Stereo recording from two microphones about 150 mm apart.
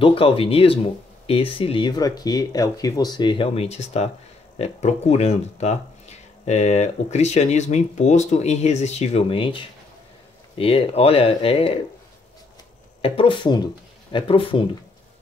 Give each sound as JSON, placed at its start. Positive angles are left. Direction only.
{"t": 0.0, "sound": "speech", "side_deg": 35}
{"t": 10.6, "sound": "speech", "side_deg": 40}
{"t": 13.0, "sound": "speech", "side_deg": 40}